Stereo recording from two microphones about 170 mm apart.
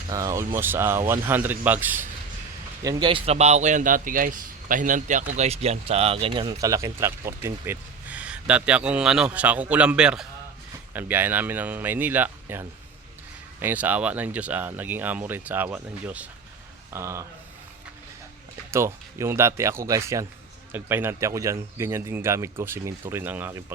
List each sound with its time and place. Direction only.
0.1 s speech: 20° right (ahead or behind)
2.8 s speech: 25° right (ahead or behind)
18.7 s speech: 15° right (ahead or behind)